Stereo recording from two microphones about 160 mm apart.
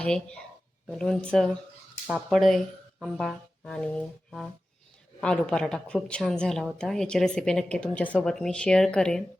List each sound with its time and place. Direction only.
0.0 s a woman's voice: 5° left (ahead or behind)